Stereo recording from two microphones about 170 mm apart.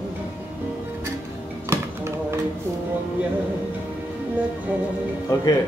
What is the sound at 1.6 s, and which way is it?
Music, 15° right (ahead or behind).